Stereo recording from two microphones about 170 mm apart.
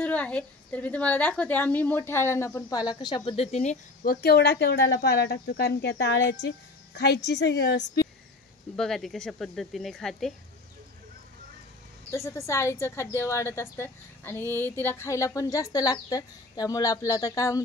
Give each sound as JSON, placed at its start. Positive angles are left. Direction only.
{"t": 0.0, "sound": "a woman's voice", "side_deg": 5}
{"t": 4.0, "sound": "speech", "side_deg": 60}
{"t": 8.7, "sound": "speech", "side_deg": 0}
{"t": 12.1, "sound": "a woman's voice", "side_deg": 15}